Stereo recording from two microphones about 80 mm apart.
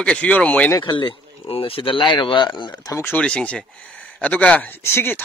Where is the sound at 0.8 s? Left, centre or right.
Left.